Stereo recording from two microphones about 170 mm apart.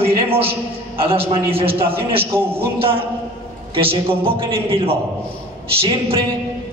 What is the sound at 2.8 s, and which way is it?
A man's voice, 30° right (ahead or behind).